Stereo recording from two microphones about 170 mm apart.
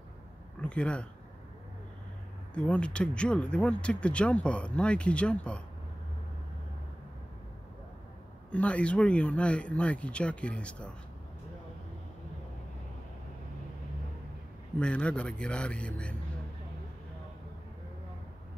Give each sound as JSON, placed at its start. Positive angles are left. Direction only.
{"t": 0.6, "sound": "speech", "side_deg": 5}
{"t": 2.5, "sound": "speech", "side_deg": 5}
{"t": 8.5, "sound": "speech", "side_deg": 10}
{"t": 14.8, "sound": "speech", "side_deg": 5}